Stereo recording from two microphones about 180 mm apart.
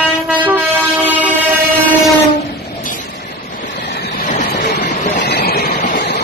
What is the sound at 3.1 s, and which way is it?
Vehicle, 55° left (ahead or behind).